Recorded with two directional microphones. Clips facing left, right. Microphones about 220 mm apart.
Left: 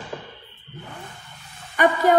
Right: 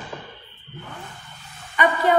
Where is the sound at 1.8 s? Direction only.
50° left (ahead or behind).